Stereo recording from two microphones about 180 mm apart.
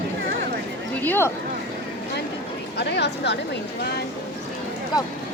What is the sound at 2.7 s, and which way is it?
Speech, 70° left (ahead or behind).